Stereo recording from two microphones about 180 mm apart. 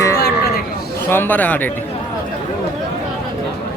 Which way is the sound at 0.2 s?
65° left (ahead or behind).